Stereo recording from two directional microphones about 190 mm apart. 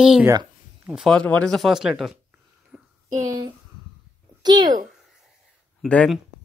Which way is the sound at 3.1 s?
20° right (ahead or behind).